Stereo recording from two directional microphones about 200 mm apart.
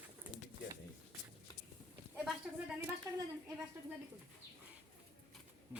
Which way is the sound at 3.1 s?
15° right (ahead or behind).